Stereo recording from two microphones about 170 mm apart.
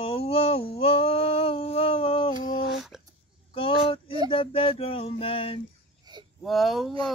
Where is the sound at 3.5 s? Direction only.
30° left (ahead or behind).